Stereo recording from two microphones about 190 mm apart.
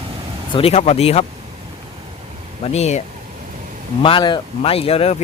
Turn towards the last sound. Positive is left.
turn(degrees=30)  # may be behind; listen again after turning